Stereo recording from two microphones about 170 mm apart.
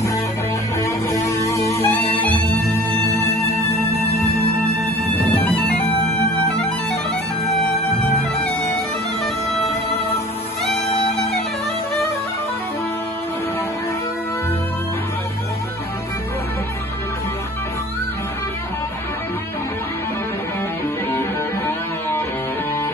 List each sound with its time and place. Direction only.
0.7 s music: 20° left (ahead or behind)
5.4 s bagpipes: 10° left (ahead or behind)
21.2 s music: 15° left (ahead or behind)